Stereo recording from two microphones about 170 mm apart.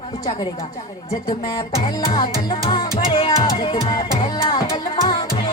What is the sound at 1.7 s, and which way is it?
Music, 30° left (ahead or behind).